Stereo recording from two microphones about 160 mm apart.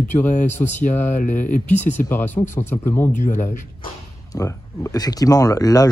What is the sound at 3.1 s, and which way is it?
Speech, 50° left (ahead or behind).